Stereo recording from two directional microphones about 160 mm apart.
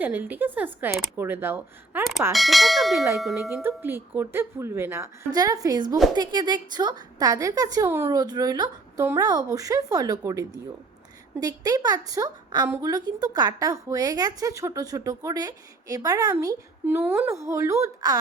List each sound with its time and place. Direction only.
0.0 s speech: 10° right (ahead or behind)
2.3 s bell: centre (ahead or behind)
3.6 s a woman's voice: 15° right (ahead or behind)
12.6 s speech: 15° right (ahead or behind)
12.9 s a woman's voice: 25° right (ahead or behind)